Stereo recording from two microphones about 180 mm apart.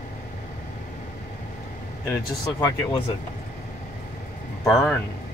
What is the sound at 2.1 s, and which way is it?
Speech, 20° left (ahead or behind).